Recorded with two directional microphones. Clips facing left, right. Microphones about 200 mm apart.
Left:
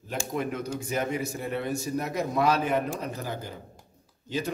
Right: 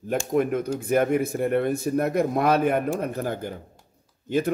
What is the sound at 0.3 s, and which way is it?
A man's voice, 50° right (ahead or behind).